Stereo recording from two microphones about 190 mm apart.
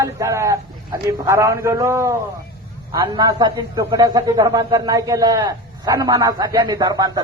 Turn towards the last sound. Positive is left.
turn(degrees=-20)  # may be behind; listen again after turning